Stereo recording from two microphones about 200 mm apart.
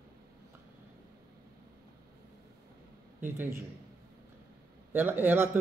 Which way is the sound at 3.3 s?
10° right (ahead or behind).